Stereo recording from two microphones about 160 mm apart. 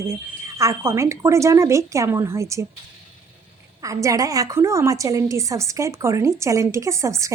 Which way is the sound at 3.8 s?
20° right (ahead or behind).